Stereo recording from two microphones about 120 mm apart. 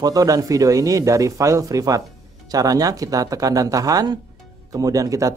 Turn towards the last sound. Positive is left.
turn(degrees=-30)  # may be behind; listen again after turning